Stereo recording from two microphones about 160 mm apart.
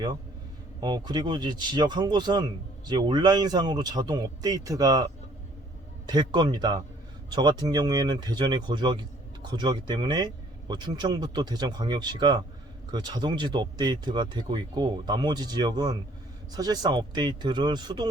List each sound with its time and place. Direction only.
0.8 s speech: 25° right (ahead or behind)
6.1 s speech: 25° right (ahead or behind)